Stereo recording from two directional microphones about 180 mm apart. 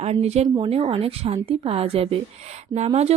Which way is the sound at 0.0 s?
35° right (ahead or behind).